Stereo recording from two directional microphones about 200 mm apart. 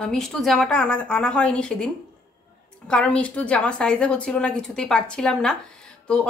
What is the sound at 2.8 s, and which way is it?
A woman's voice, 5° left (ahead or behind).